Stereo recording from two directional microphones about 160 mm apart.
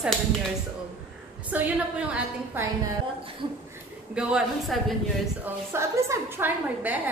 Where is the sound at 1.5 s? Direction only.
10° right (ahead or behind).